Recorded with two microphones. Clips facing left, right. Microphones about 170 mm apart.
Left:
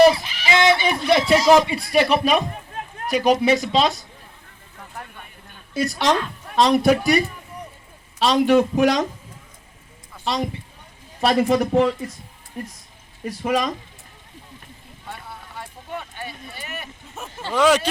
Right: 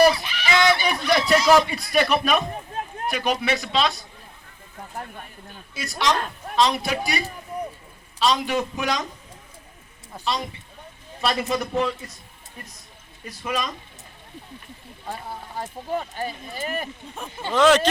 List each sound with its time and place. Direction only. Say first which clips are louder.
0.0 s sheep: left 3 dB; 25° left (ahead or behind)
1.5 s speech: left 3 dB; 25° left (ahead or behind)
3.2 s speech: left 8 dB; 40° left (ahead or behind)
5.7 s a man's voice: left 4 dB; 55° left (ahead or behind)
11.2 s a man's voice: left 7 dB; 60° left (ahead or behind)
13.2 s speech: left 6 dB; 65° left (ahead or behind)
15.0 s speech: right 4 dB; 35° right (ahead or behind)
17.5 s speech: even; 10° left (ahead or behind)